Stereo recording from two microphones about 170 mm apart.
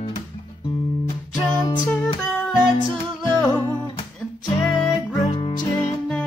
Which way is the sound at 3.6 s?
30° left (ahead or behind).